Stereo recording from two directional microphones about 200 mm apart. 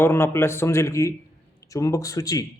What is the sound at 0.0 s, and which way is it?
A man's voice, 10° left (ahead or behind).